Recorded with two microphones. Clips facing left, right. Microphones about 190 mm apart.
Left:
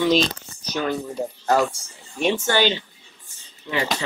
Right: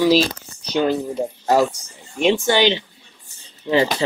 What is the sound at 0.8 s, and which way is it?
Speech, 25° right (ahead or behind).